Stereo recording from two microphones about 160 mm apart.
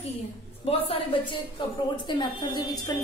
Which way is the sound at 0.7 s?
35° left (ahead or behind).